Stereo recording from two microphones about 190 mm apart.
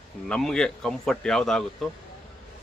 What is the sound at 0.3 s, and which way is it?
Speech, 5° left (ahead or behind).